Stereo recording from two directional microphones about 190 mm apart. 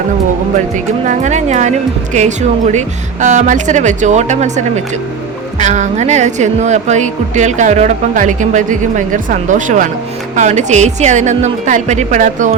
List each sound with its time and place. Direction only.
1.0 s a woman's voice: 40° right (ahead or behind)
2.7 s a woman's voice: 40° right (ahead or behind)